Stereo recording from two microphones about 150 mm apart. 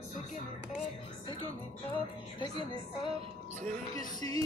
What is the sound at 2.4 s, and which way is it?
Speech, 30° left (ahead or behind).